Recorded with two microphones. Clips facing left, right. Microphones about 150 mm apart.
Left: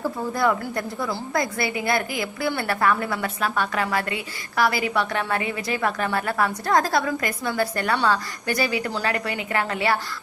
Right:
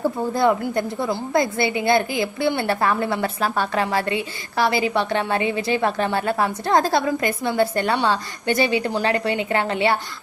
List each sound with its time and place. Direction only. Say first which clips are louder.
0.0 s a woman's voice: right 4 dB; 25° right (ahead or behind)